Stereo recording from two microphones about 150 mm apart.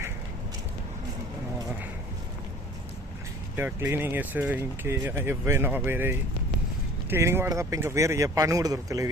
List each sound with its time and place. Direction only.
3.5 s speech: 15° right (ahead or behind)